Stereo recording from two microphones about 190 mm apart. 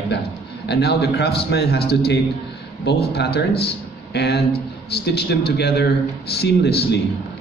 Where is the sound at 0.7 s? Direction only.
60° left (ahead or behind).